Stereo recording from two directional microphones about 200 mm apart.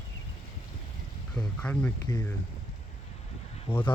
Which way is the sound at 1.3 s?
5° left (ahead or behind).